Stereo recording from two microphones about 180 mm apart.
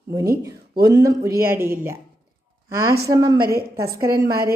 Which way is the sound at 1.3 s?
55° right (ahead or behind).